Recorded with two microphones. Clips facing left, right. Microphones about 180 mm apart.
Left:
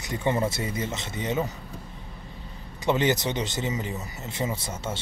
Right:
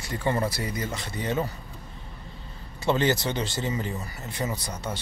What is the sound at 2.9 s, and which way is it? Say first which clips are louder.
Speech: even; 20° left (ahead or behind).